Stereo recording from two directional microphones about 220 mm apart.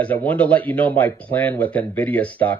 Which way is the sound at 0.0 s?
5° left (ahead or behind).